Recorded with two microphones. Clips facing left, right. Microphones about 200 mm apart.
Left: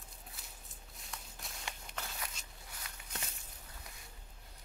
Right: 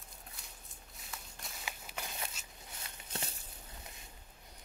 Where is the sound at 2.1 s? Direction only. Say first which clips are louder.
Right 2 dB; 25° right (ahead or behind).